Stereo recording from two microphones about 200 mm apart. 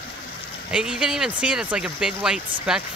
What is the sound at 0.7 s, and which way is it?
Speech, 5° right (ahead or behind).